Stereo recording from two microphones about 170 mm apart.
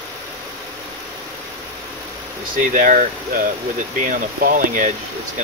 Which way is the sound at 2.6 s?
50° right (ahead or behind).